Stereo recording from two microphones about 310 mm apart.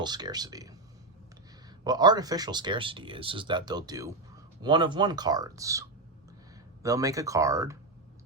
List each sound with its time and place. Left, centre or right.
0.0 s speech: centre
1.8 s speech: centre